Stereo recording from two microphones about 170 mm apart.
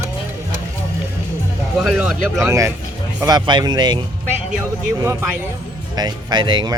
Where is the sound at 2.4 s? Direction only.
15° right (ahead or behind).